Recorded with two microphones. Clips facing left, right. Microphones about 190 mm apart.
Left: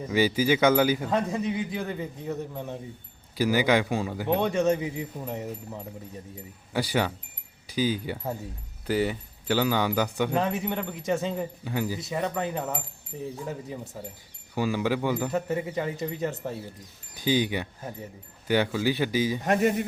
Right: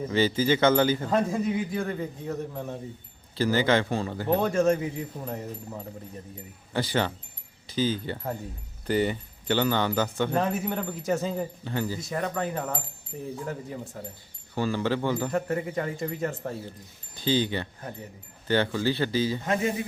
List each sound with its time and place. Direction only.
0.1 s speech: 10° left (ahead or behind)
3.3 s speech: 10° left (ahead or behind)
10.5 s speech: centre (ahead or behind)
11.6 s speech: 10° left (ahead or behind)
17.2 s speech: 15° left (ahead or behind)